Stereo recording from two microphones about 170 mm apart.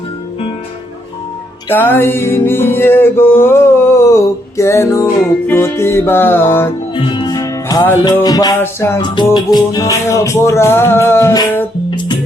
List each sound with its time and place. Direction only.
1.7 s music: 10° left (ahead or behind)
6.9 s music: 30° left (ahead or behind)
9.0 s music: 25° left (ahead or behind)